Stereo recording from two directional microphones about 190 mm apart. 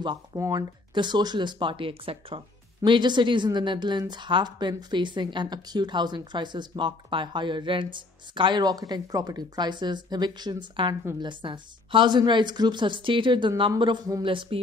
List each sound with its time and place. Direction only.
0.0 s speech: 20° right (ahead or behind)